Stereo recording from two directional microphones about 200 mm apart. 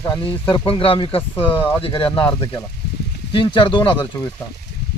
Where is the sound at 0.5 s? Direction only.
25° left (ahead or behind).